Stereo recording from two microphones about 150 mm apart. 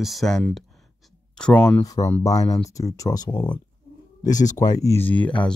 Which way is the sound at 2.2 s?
20° left (ahead or behind).